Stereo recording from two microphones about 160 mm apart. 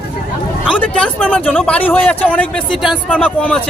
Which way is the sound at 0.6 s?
5° left (ahead or behind).